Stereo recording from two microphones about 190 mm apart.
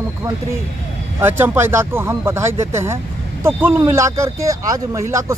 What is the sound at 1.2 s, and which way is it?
Speech, 10° right (ahead or behind).